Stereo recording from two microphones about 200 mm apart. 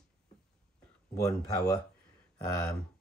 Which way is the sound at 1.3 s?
15° left (ahead or behind).